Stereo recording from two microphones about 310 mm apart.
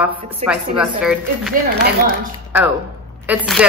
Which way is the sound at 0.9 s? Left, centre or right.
Centre.